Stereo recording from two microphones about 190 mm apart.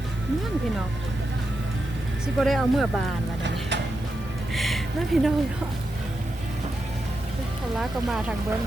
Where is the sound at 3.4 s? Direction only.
65° right (ahead or behind).